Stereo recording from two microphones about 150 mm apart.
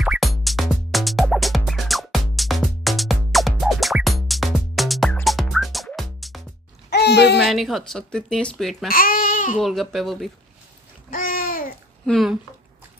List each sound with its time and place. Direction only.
0.0 s music: centre (ahead or behind)
6.9 s a sound: 90° left
7.4 s speech: centre (ahead or behind)
8.8 s speech: 75° left (ahead or behind)
9.6 s speech: centre (ahead or behind)
11.1 s babbling: 70° left (ahead or behind)
12.1 s speech: centre (ahead or behind)